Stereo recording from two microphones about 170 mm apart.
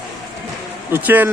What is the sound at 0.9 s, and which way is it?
Speech, 10° right (ahead or behind).